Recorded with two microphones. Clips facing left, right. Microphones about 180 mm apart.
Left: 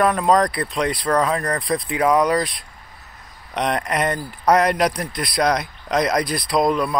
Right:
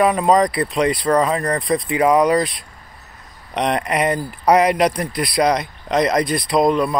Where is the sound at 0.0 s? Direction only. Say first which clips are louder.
Right 2 dB; 5° right (ahead or behind).